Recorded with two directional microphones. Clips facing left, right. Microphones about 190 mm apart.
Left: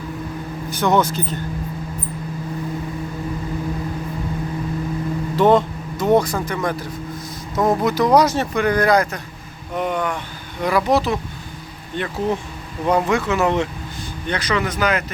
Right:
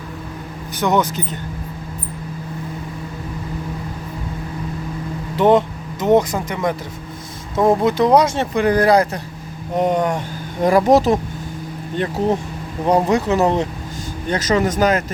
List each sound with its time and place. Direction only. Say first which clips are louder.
0.7 s speech: even; 15° right (ahead or behind)
5.4 s vehicle: right 1 dB; 15° right (ahead or behind)
7.5 s speech: right 3 dB; 25° right (ahead or behind); by 15.0 s 45° right (ahead or behind)